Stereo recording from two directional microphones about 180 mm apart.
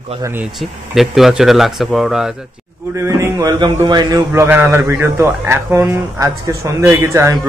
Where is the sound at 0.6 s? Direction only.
Centre (ahead or behind).